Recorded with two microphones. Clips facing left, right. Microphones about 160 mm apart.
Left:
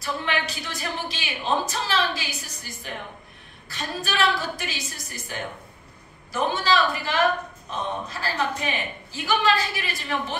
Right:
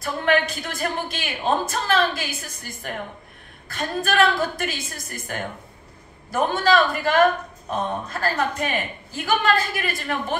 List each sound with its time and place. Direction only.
0.0 s a woman's voice: 50° right (ahead or behind)